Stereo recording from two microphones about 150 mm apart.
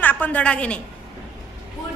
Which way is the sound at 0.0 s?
10° left (ahead or behind).